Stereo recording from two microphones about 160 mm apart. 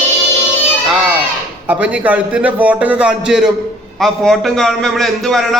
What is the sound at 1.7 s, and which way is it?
A man's voice, 10° right (ahead or behind).